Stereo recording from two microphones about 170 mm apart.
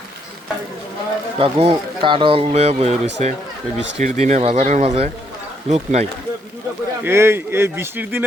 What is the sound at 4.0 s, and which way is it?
Speech, 45° right (ahead or behind).